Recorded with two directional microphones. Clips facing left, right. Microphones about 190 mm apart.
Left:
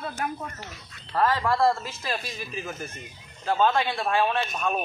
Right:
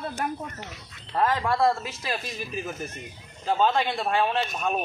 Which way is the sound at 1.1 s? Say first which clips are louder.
Left 1 dB; 20° right (ahead or behind).